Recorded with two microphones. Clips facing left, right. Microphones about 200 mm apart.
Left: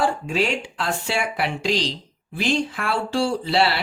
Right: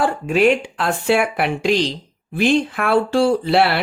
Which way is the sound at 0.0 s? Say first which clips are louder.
Right 6 dB; 55° right (ahead or behind).